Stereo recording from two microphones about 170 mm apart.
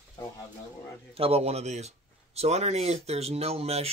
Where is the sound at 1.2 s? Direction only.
35° right (ahead or behind).